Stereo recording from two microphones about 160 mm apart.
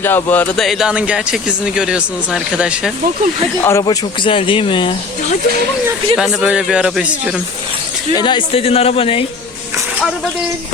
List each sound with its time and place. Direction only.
0.0 s speech: 15° left (ahead or behind); by 2.9 s 5° right (ahead or behind)
3.6 s speech: 15° left (ahead or behind)
3.8 s speech: 30° left (ahead or behind)
6.1 s speech: 5° right (ahead or behind)
8.1 s speech: 30° left (ahead or behind)